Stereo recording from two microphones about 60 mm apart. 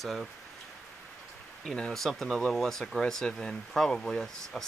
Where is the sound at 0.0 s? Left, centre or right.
Centre.